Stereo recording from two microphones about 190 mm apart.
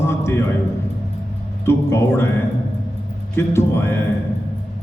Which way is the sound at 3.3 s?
15° left (ahead or behind).